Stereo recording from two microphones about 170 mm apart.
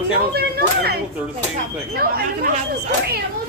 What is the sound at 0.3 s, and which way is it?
A woman's voice, 65° right (ahead or behind).